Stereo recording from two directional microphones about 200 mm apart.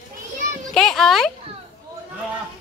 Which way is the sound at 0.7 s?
Centre (ahead or behind).